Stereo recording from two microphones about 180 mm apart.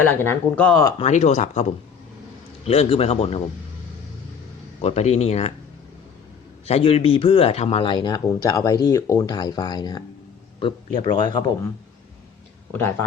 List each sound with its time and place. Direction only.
0.1 s speech: 10° left (ahead or behind)
1.0 s speech: 40° left (ahead or behind)
2.6 s speech: 35° left (ahead or behind)
4.8 s speech: 35° left (ahead or behind)
6.7 s speech: 35° left (ahead or behind)
12.7 s speech: 10° left (ahead or behind)